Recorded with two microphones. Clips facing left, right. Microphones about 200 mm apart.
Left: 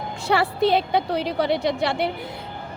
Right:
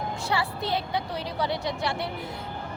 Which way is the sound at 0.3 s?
75° left (ahead or behind).